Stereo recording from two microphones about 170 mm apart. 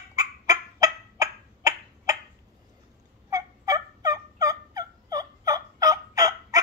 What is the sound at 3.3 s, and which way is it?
Fowl, 20° right (ahead or behind).